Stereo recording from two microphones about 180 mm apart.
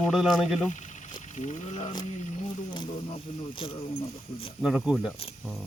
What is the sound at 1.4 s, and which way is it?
Speech, 40° left (ahead or behind).